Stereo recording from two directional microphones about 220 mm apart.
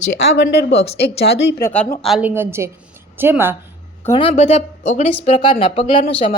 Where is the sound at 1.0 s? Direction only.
45° left (ahead or behind).